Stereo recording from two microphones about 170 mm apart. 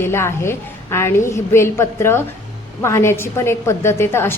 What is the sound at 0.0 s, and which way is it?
A woman's voice, 15° left (ahead or behind).